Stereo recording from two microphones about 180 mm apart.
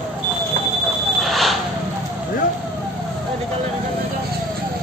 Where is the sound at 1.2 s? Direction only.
Centre (ahead or behind).